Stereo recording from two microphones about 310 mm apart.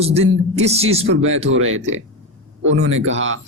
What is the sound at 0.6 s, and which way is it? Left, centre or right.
Speech, centre.